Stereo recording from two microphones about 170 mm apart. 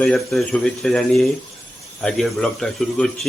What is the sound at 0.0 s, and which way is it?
Speech, 5° left (ahead or behind).